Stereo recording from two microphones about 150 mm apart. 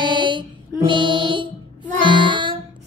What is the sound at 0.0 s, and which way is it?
Music, 30° right (ahead or behind).